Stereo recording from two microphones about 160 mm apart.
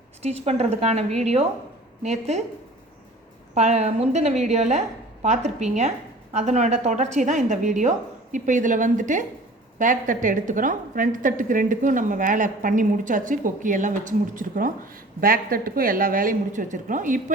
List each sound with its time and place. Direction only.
0.2 s a woman's voice: 40° right (ahead or behind)
3.5 s a woman's voice: 45° right (ahead or behind)